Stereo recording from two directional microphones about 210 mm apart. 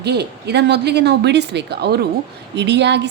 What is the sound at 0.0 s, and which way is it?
A woman's voice, 50° right (ahead or behind).